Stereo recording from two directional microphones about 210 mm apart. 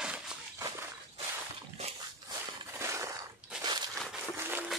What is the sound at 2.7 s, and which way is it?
Crushing, 15° right (ahead or behind).